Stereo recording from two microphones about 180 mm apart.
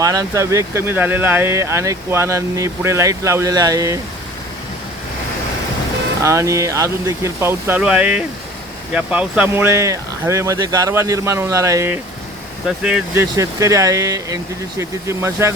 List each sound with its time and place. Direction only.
0.0 s speech: 20° right (ahead or behind)
6.2 s speech: 15° right (ahead or behind)
12.6 s speech: 5° right (ahead or behind)
13.3 s speech: 15° right (ahead or behind)